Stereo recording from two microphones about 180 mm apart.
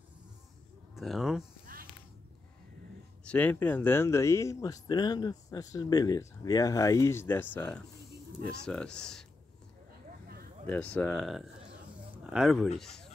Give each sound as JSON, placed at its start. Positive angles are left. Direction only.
{"t": 0.9, "sound": "speech", "side_deg": 0}
{"t": 3.3, "sound": "speech", "side_deg": 10}
{"t": 10.7, "sound": "speech", "side_deg": 10}
{"t": 11.2, "sound": "speech", "side_deg": 0}